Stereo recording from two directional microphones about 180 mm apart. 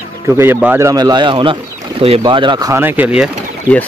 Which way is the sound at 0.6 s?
10° right (ahead or behind).